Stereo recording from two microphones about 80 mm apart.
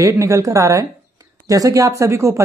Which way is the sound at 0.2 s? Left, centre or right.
Right.